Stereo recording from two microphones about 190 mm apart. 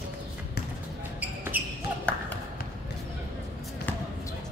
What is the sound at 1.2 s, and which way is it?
Basketball bounce, 10° right (ahead or behind).